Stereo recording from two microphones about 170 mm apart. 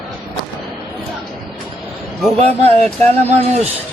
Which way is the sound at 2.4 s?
35° right (ahead or behind).